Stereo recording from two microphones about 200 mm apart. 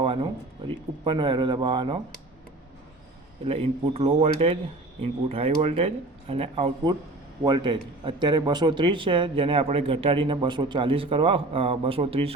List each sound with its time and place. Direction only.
0.0 s a sound: 30° right (ahead or behind)
1.0 s speech: 25° right (ahead or behind)
3.4 s speech: 30° right (ahead or behind)